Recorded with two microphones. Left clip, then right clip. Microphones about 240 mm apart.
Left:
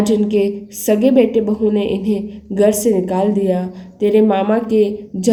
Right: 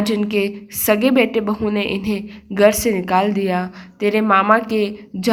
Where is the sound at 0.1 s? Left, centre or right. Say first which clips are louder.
Left 4 dB; right.